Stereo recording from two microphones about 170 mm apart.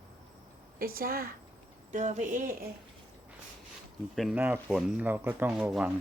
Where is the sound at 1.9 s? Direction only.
45° right (ahead or behind).